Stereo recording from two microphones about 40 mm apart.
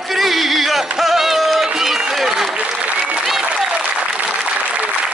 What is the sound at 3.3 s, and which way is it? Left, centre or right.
Applause, centre.